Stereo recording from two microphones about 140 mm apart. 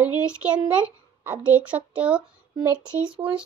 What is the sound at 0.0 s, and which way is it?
A child's voice, 10° right (ahead or behind).